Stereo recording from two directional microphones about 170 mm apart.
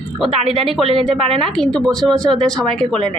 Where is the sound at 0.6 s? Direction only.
Centre (ahead or behind).